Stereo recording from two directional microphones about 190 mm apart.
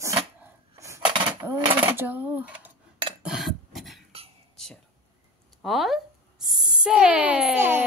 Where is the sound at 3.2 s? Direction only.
Centre (ahead or behind).